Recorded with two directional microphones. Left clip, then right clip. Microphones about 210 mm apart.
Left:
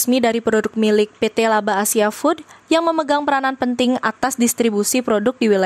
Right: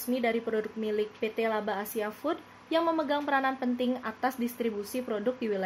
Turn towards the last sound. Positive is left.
turn(degrees=50)  # may be behind; listen again after turning